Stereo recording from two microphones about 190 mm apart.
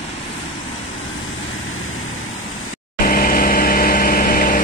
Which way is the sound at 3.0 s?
50° left (ahead or behind).